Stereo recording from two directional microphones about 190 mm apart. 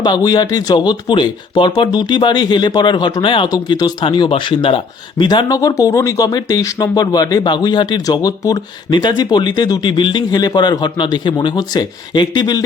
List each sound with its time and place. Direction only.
0.0 s speech: 20° left (ahead or behind)